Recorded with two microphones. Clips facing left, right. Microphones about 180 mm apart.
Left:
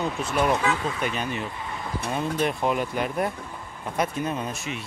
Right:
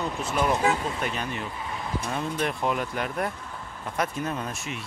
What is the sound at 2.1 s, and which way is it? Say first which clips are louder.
Speech: left 4 dB; 15° left (ahead or behind).